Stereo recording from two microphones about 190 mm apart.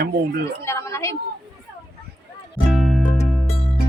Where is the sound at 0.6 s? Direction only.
15° left (ahead or behind).